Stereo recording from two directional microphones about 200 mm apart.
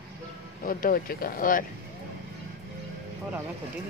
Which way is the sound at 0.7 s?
45° left (ahead or behind).